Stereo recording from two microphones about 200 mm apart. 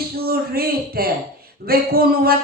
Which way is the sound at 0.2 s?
50° right (ahead or behind).